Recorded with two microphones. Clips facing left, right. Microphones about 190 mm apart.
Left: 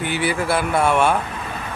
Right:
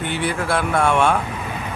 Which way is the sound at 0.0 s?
5° left (ahead or behind).